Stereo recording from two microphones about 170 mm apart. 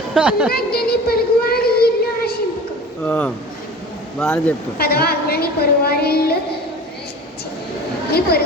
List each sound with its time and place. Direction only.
0.1 s speech: 5° right (ahead or behind)
0.5 s a sound: 65° left (ahead or behind)
3.0 s a man's voice: 10° left (ahead or behind)
4.8 s a woman's voice: 65° left (ahead or behind)
8.1 s a woman's voice: 65° left (ahead or behind)